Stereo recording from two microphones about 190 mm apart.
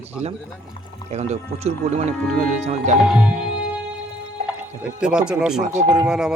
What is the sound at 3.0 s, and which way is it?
Speech, 5° right (ahead or behind).